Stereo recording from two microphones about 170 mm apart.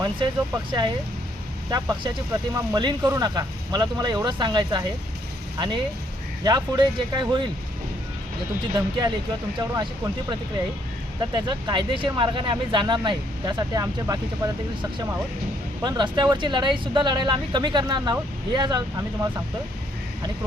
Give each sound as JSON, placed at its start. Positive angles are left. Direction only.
{"t": 1.7, "sound": "speech", "side_deg": -25}
{"t": 8.7, "sound": "speech", "side_deg": -25}